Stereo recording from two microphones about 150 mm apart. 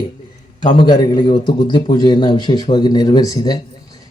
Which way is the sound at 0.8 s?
30° left (ahead or behind).